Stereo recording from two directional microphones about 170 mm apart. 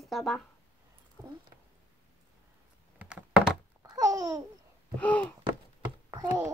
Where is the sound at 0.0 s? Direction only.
Centre (ahead or behind).